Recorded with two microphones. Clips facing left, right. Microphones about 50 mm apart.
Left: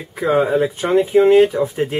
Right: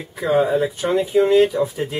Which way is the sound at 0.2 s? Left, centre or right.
Left.